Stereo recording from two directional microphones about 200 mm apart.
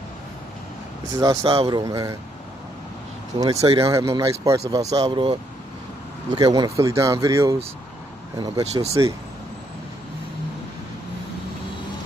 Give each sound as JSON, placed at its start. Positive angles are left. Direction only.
{"t": 1.2, "sound": "speech", "side_deg": -20}
{"t": 3.3, "sound": "speech", "side_deg": -25}